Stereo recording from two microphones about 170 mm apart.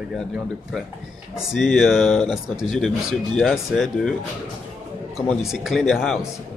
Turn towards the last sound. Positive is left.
turn(degrees=0)  # may be behind; listen again after turning